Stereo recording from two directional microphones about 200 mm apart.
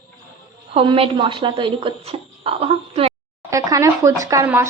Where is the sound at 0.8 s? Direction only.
30° right (ahead or behind).